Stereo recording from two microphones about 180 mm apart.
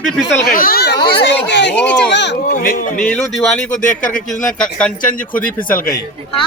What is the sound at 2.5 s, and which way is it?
Speech, 50° left (ahead or behind).